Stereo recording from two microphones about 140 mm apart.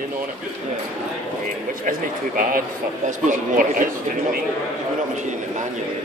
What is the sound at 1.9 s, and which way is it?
A man's voice, 80° right.